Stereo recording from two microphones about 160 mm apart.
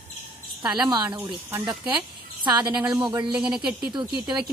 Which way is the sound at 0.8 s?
25° right (ahead or behind).